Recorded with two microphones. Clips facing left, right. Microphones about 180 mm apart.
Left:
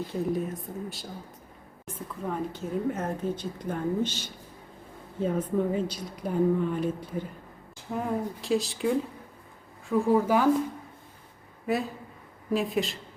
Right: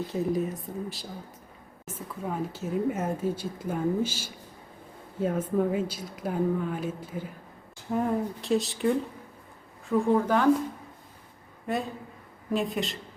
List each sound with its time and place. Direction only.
0.1 s a woman's voice: centre (ahead or behind)
11.6 s a woman's voice: centre (ahead or behind)